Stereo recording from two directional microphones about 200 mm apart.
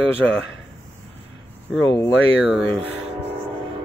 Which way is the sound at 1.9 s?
20° left (ahead or behind).